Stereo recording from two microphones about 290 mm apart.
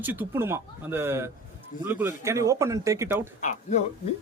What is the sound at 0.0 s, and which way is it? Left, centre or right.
Speech, centre.